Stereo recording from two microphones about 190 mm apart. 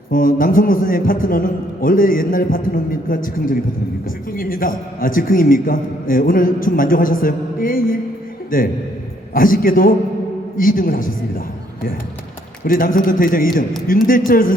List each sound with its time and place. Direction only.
0.1 s a man's voice: 45° left (ahead or behind)
12.6 s a man's voice: 45° left (ahead or behind)